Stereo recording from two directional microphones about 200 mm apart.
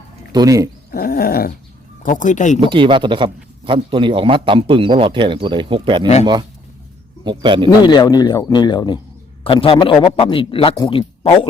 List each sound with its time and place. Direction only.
0.3 s speech: 15° right (ahead or behind)
0.9 s a sound: 50° left (ahead or behind)
2.0 s speech: 40° left (ahead or behind)
2.6 s a man's voice: 25° right (ahead or behind)
7.3 s a man's voice: 25° right (ahead or behind)
7.9 s a man's voice: 20° left (ahead or behind)